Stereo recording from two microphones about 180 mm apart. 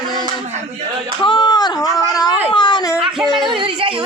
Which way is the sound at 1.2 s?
25° left (ahead or behind).